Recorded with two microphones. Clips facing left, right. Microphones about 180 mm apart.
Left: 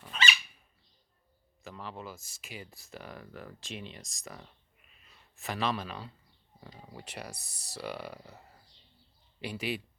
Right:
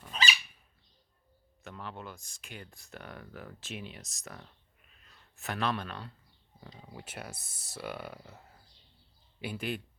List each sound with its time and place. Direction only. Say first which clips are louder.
0.1 s dog: even; 35° right (ahead or behind)
1.6 s speech: left 1 dB; centre (ahead or behind)